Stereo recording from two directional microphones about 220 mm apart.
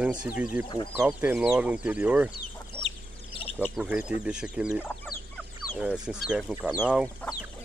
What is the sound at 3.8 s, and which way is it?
Speech, 5° right (ahead or behind).